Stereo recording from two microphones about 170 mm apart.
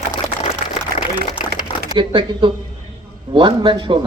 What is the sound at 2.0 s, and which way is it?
A man's voice, 30° right (ahead or behind).